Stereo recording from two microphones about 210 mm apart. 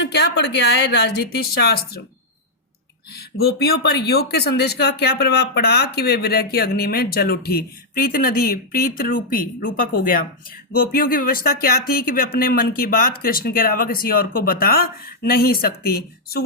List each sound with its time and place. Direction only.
0.0 s speech: 55° left (ahead or behind)
3.4 s speech: 50° left (ahead or behind)